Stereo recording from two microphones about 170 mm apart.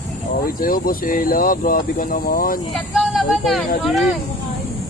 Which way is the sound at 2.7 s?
Centre (ahead or behind).